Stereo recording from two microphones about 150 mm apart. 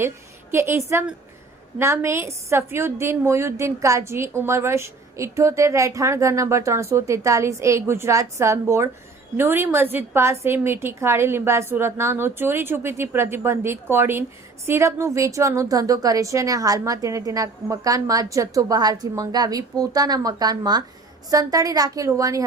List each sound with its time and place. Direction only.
0.5 s a woman's voice: 15° right (ahead or behind)
1.8 s a woman's voice: 15° right (ahead or behind)